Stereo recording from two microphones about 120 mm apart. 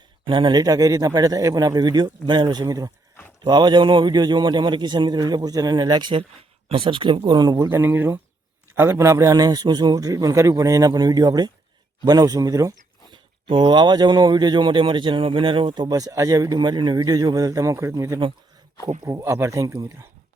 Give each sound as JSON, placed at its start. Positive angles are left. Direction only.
{"t": 0.3, "sound": "speech", "side_deg": -40}
{"t": 13.1, "sound": "speech", "side_deg": -40}